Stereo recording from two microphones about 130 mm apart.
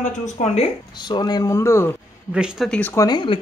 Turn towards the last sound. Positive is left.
turn(degrees=35)  # may be behind; listen again after turning